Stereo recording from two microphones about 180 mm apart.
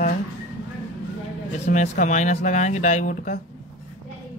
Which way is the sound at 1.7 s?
45° left (ahead or behind).